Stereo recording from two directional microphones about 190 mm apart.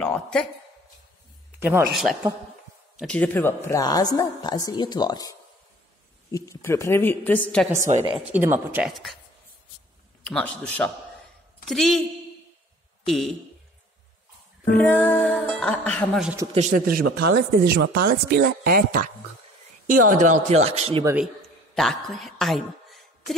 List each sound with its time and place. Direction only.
0.0 s a sound: 5° left (ahead or behind)
1.6 s speech: 10° right (ahead or behind)
3.0 s a woman's voice: 5° left (ahead or behind)
6.3 s speech: 15° left (ahead or behind)
8.2 s speech: 10° right (ahead or behind)
10.2 s a woman's voice: 5° left (ahead or behind)
13.0 s speech: centre (ahead or behind)
14.7 s speech: 10° left (ahead or behind)
16.5 s speech: 45° right (ahead or behind)
21.0 s speech: 10° right (ahead or behind)
21.7 s a woman's voice: centre (ahead or behind)